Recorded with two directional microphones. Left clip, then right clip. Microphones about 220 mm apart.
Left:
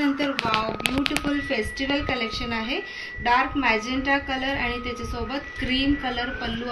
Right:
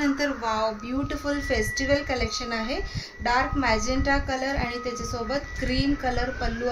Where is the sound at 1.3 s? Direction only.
50° right (ahead or behind).